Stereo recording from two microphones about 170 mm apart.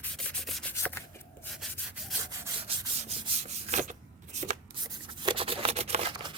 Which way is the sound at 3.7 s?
40° right (ahead or behind).